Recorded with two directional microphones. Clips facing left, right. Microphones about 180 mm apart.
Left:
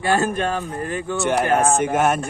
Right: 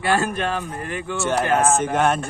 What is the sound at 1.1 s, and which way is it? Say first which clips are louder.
Speech: left 1 dB; 20° left (ahead or behind).